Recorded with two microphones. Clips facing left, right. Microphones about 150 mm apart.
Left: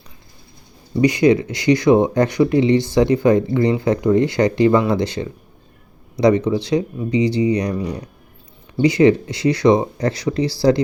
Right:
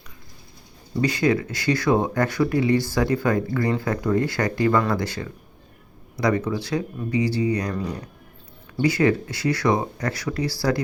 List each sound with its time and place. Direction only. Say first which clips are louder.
1.0 s speech: left 7 dB; 20° left (ahead or behind)